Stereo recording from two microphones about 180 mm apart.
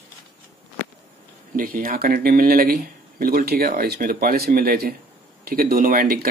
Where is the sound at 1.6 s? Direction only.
50° right (ahead or behind).